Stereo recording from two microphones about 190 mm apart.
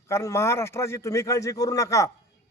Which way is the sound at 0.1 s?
15° left (ahead or behind).